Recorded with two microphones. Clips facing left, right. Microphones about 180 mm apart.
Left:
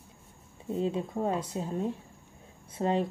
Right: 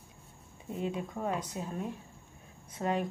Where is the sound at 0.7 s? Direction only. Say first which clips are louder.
Left 5 dB; 30° left (ahead or behind).